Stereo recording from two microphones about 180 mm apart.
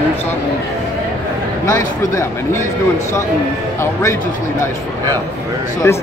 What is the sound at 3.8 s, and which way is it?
Speech, 15° left (ahead or behind).